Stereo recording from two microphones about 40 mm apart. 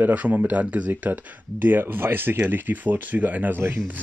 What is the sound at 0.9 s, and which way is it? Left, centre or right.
Speech, right.